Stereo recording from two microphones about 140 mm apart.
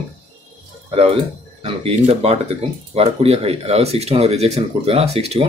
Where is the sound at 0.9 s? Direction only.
45° right (ahead or behind).